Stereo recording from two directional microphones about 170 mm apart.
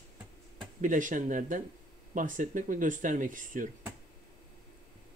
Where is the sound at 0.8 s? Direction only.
50° right (ahead or behind).